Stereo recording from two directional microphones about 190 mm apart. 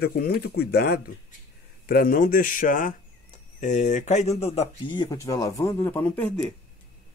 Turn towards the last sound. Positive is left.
turn(degrees=5)  # may be behind; listen again after turning